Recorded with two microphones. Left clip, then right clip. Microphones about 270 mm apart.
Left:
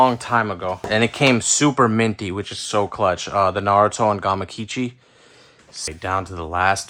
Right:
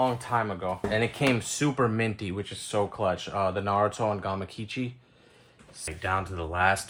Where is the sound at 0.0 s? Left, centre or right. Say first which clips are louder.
Left 10 dB; left.